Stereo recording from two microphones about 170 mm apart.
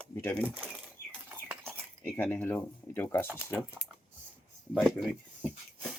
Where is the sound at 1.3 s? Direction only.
10° right (ahead or behind).